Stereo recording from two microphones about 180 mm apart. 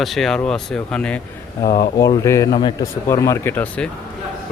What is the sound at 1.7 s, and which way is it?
Speech, 55° left (ahead or behind).